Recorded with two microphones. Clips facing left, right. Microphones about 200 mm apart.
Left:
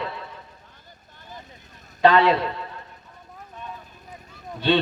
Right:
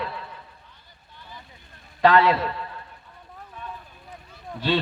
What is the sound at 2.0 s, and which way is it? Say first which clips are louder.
Speech: left 1 dB; centre (ahead or behind).